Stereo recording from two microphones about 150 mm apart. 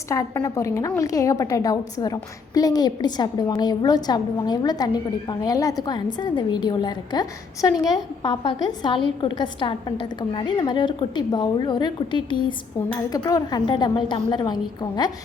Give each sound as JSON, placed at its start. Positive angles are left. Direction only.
{"t": 0.1, "sound": "a woman's voice", "side_deg": 20}